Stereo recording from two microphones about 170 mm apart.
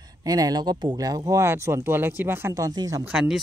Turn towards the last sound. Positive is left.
turn(degrees=-5)  # may be behind; listen again after turning